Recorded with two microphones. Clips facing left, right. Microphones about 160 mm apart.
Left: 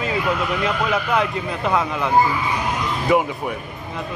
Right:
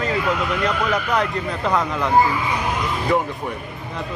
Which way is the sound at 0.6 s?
5° left (ahead or behind).